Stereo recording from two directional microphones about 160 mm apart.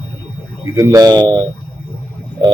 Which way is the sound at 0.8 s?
25° right (ahead or behind).